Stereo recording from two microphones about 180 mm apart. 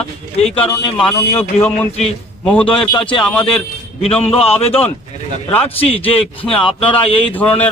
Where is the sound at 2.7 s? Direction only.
30° left (ahead or behind).